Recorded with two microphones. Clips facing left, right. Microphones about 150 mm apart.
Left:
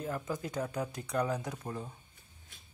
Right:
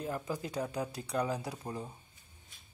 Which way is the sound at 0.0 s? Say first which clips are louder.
Even; 20° right (ahead or behind).